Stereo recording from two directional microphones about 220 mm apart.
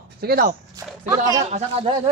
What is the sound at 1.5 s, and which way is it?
Speech, 30° right (ahead or behind).